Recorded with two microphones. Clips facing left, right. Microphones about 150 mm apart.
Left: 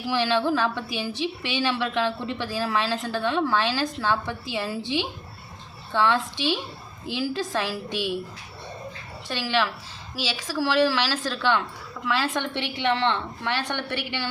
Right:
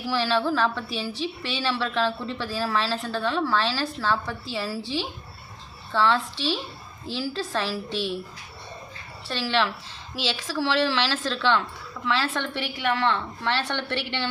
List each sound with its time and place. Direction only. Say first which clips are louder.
0.1 s a woman's voice: left 1 dB; 20° left (ahead or behind)
9.2 s a woman's voice: even; 15° left (ahead or behind)